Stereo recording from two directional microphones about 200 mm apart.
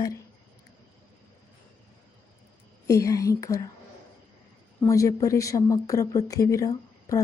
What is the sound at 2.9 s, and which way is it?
Speech, 15° left (ahead or behind).